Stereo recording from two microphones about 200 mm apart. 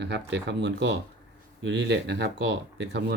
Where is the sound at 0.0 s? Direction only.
60° right (ahead or behind).